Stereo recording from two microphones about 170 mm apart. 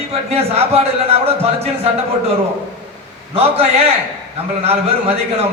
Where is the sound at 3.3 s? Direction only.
40° right (ahead or behind).